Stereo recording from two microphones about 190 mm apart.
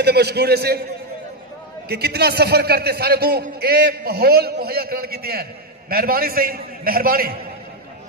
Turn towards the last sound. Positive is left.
turn(degrees=-50)  # may be behind; listen again after turning